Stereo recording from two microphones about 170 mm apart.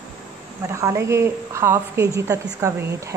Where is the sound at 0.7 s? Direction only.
15° right (ahead or behind).